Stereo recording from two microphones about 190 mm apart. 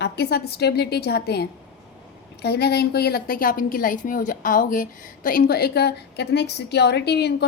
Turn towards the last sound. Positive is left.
turn(degrees=60)  # may be behind; listen again after turning